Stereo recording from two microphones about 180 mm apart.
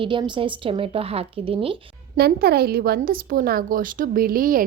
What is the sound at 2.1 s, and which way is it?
A woman's voice, 60° right (ahead or behind).